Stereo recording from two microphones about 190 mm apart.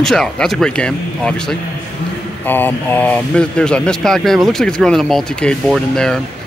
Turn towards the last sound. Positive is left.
turn(degrees=5)  # may be behind; listen again after turning